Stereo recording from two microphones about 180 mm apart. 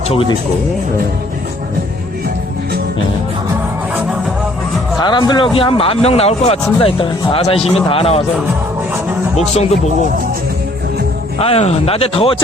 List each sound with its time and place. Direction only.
0.1 s speech: 30° left (ahead or behind)
4.9 s a man's voice: 25° left (ahead or behind)
9.3 s a man's voice: 35° left (ahead or behind)
11.3 s a man's voice: 35° left (ahead or behind)